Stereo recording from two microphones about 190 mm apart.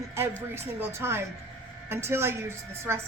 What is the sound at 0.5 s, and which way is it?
Speech, 10° right (ahead or behind).